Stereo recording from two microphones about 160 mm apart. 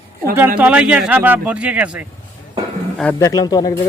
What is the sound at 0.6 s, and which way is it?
A man's voice, 10° right (ahead or behind).